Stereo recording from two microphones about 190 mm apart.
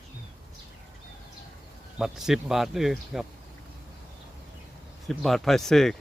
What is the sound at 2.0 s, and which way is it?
Speech, centre (ahead or behind).